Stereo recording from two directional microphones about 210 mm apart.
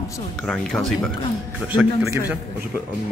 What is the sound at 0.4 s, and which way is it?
A man's voice, centre (ahead or behind).